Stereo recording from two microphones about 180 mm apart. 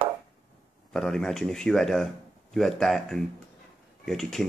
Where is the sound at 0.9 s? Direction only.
5° left (ahead or behind).